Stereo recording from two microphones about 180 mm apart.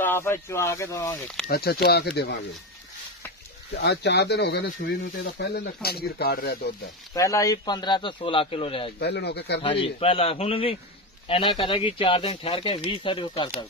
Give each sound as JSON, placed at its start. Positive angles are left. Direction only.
{"t": 0.0, "sound": "speech", "side_deg": 10}
{"t": 1.5, "sound": "speech", "side_deg": 60}
{"t": 3.7, "sound": "speech", "side_deg": 70}
{"t": 7.2, "sound": "speech", "side_deg": 15}
{"t": 9.0, "sound": "speech", "side_deg": 65}
{"t": 9.6, "sound": "a man's voice", "side_deg": 30}